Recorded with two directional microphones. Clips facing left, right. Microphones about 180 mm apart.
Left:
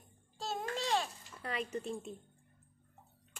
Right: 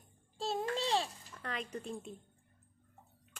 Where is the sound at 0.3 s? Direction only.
30° right (ahead or behind).